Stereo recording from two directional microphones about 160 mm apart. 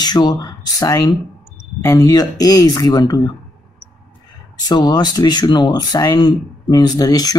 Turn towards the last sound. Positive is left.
turn(degrees=25)  # may be behind; listen again after turning